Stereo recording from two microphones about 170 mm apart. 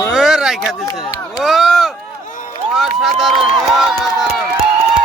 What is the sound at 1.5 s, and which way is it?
Speech, centre (ahead or behind).